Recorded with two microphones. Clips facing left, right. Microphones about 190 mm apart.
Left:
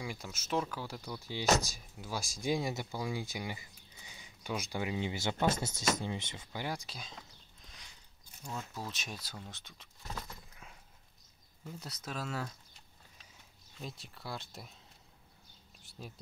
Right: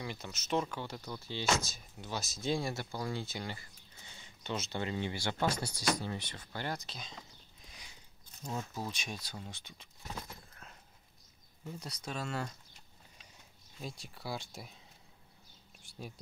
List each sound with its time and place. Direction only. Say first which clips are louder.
0.0 s speech: even; 10° left (ahead or behind)
6.3 s speech: even; 10° left (ahead or behind)
8.5 s speech: right 3 dB; 15° right (ahead or behind)
8.8 s speech: right 2 dB; 5° left (ahead or behind)
10.6 s a sound: even; 10° left (ahead or behind)
11.6 s speech: right 2 dB; 5° left (ahead or behind)
13.7 s speech: right 1 dB; centre (ahead or behind)